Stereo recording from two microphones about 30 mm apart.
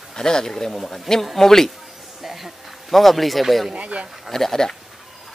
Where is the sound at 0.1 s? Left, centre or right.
Left.